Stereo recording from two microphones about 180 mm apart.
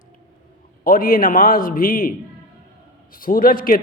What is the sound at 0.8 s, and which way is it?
A man's voice, 50° left (ahead or behind).